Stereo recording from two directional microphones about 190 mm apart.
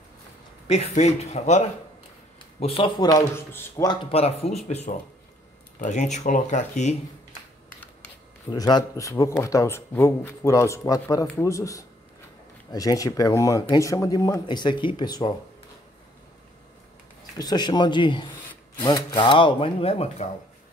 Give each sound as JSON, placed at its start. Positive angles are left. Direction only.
{"t": 0.7, "sound": "speech", "side_deg": 35}
{"t": 2.6, "sound": "speech", "side_deg": 30}
{"t": 8.5, "sound": "a man's voice", "side_deg": 20}
{"t": 17.4, "sound": "speech", "side_deg": 20}